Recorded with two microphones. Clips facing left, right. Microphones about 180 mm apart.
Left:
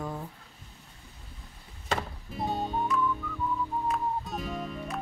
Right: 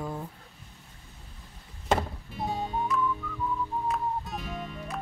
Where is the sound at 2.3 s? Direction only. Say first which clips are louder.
Left 1 dB; centre (ahead or behind).